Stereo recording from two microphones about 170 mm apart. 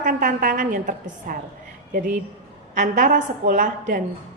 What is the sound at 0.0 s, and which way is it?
A woman's voice, 50° right (ahead or behind).